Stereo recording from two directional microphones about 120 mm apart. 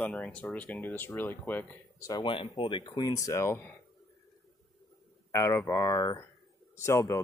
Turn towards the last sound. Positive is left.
turn(degrees=20)  # may be behind; listen again after turning